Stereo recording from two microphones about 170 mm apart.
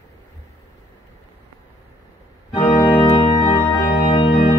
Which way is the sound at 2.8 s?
30° left (ahead or behind).